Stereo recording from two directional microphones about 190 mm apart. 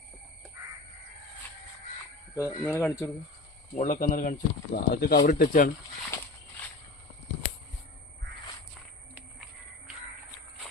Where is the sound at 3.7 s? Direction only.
40° left (ahead or behind).